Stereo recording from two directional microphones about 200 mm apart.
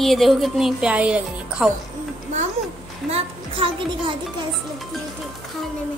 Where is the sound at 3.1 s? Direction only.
25° right (ahead or behind).